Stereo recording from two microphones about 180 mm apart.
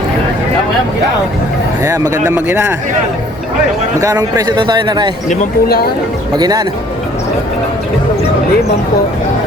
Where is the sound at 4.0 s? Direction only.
15° right (ahead or behind).